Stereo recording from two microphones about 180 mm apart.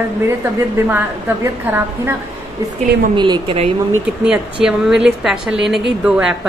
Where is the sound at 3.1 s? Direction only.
25° right (ahead or behind).